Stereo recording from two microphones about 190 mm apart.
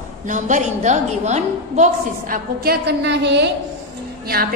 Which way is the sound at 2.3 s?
55° right (ahead or behind).